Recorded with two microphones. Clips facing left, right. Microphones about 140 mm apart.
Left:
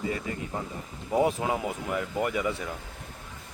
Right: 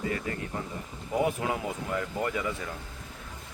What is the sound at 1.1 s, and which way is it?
Speech, 25° left (ahead or behind).